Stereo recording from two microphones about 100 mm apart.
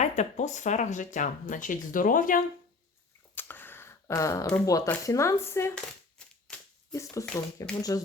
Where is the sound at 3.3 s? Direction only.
20° left (ahead or behind).